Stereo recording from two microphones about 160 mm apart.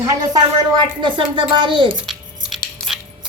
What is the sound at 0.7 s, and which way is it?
Speech, 30° right (ahead or behind).